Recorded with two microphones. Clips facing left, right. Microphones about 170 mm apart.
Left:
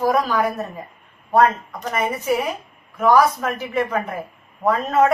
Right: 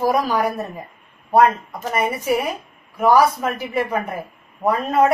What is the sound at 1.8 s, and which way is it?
A woman's voice, 10° right (ahead or behind).